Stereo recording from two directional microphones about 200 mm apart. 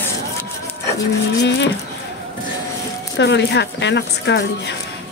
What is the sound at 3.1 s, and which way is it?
Speech, 60° left (ahead or behind).